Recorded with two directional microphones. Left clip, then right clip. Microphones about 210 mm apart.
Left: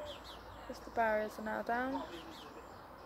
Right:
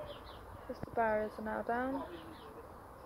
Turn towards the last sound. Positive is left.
turn(degrees=0)  # may be behind; listen again after turning